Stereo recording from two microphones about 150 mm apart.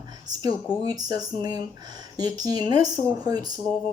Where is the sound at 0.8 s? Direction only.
25° right (ahead or behind).